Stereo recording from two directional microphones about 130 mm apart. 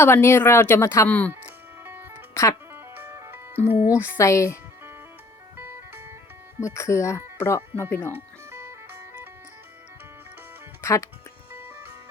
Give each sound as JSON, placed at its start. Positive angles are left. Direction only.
{"t": 0.0, "sound": "speech", "side_deg": 20}
{"t": 1.3, "sound": "music", "side_deg": -15}
{"t": 2.3, "sound": "speech", "side_deg": 25}
{"t": 2.7, "sound": "music", "side_deg": -20}
{"t": 3.7, "sound": "speech", "side_deg": -15}
{"t": 4.2, "sound": "speech", "side_deg": 25}
{"t": 5.5, "sound": "music", "side_deg": -15}
{"t": 6.6, "sound": "speech", "side_deg": 25}
{"t": 8.1, "sound": "music", "side_deg": -20}
{"t": 10.8, "sound": "music", "side_deg": 25}